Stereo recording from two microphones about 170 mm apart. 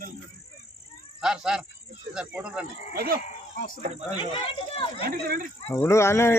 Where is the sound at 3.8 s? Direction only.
40° right (ahead or behind).